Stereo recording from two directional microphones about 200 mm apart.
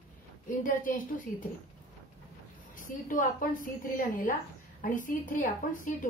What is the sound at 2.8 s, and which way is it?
A woman's voice, 40° left (ahead or behind).